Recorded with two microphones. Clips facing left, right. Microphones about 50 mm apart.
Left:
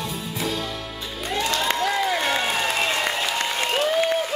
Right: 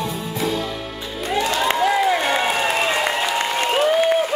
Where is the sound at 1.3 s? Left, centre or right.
Centre.